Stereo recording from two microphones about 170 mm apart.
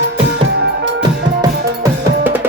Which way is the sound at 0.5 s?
90° right.